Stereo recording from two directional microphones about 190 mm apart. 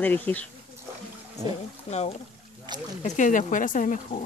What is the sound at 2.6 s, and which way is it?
Rowboat, 25° right (ahead or behind).